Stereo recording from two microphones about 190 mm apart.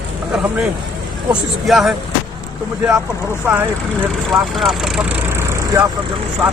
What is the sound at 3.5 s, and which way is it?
A man's voice, 10° right (ahead or behind).